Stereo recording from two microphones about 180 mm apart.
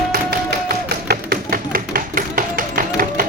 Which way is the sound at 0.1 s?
60° right (ahead or behind).